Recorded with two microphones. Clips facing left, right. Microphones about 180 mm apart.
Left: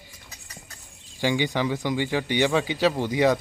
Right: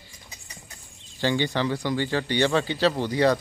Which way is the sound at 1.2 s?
15° left (ahead or behind).